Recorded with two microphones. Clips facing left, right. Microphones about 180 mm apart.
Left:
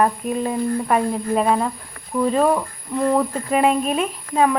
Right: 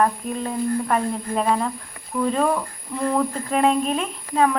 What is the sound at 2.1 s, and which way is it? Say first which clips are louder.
Speech: left 3 dB; 25° left (ahead or behind).